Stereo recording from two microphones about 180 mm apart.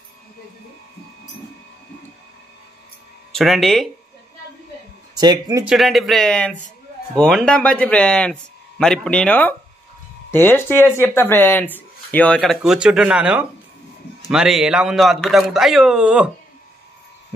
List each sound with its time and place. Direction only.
3.3 s speech: centre (ahead or behind)
5.1 s speech: 20° right (ahead or behind)
5.7 s a man's voice: centre (ahead or behind)